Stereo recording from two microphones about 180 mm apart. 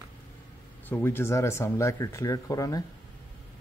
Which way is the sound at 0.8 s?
10° left (ahead or behind).